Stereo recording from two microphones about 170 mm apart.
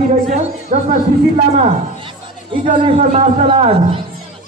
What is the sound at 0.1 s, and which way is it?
Speech, 40° right (ahead or behind).